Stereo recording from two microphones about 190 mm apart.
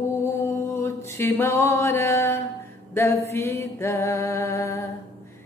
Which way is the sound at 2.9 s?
15° left (ahead or behind).